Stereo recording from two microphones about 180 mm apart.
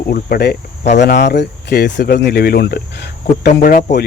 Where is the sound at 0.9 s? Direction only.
70° left (ahead or behind).